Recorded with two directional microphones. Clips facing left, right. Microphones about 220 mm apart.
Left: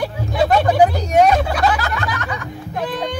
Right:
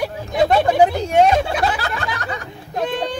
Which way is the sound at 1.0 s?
25° right (ahead or behind).